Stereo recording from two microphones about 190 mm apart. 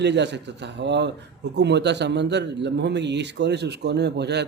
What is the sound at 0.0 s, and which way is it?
Speech, 65° right (ahead or behind).